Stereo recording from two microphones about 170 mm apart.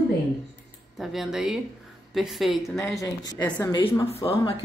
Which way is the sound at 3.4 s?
10° left (ahead or behind).